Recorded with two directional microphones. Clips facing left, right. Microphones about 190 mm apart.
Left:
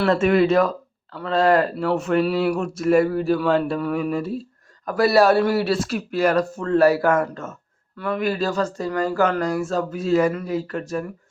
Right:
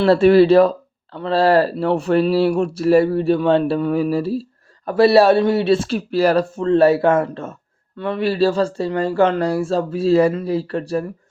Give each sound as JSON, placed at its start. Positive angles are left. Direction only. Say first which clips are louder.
{"t": 0.0, "sound": "speech", "louder": "right 6 dB", "side_deg": -35}